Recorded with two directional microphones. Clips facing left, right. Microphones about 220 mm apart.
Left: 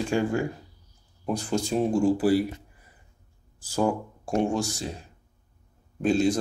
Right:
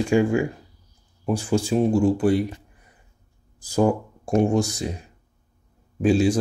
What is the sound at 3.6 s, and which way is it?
Speech, 15° right (ahead or behind).